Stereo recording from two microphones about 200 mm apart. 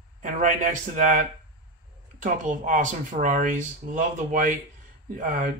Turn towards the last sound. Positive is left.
turn(degrees=-40)  # may be behind; listen again after turning